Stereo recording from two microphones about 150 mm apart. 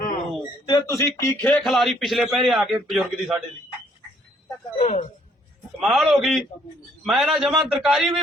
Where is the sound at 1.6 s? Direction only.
Centre (ahead or behind).